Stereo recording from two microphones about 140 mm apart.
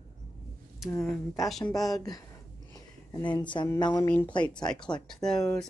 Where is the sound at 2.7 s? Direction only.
35° left (ahead or behind).